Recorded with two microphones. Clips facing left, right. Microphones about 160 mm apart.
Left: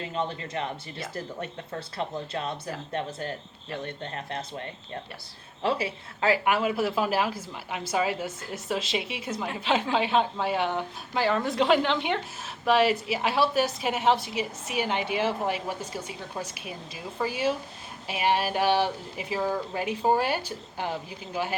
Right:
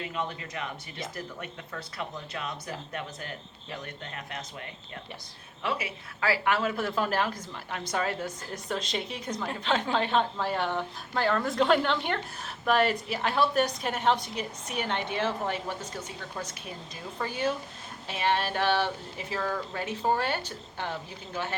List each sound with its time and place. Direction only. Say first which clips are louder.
0.0 s a woman's voice: left 3 dB; 30° left (ahead or behind); by 21.5 s 15° left (ahead or behind)